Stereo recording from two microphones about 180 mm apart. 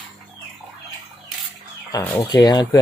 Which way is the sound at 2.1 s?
20° left (ahead or behind).